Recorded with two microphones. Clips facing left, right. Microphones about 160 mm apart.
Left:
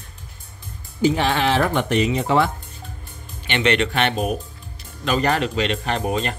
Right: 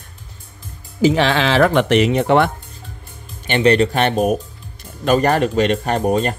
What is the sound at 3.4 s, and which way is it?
Speech, 40° right (ahead or behind).